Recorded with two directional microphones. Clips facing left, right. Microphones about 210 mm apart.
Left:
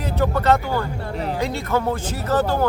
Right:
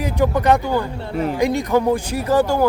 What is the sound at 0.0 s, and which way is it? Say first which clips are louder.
Speech: right 3 dB; 15° right (ahead or behind).